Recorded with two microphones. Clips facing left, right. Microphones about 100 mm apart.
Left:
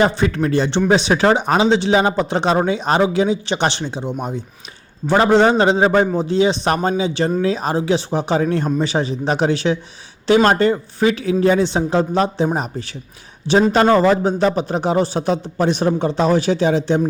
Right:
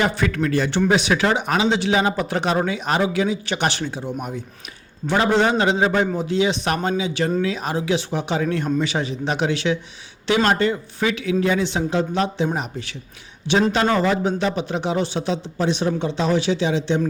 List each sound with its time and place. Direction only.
0.0 s a man's voice: 30° left (ahead or behind)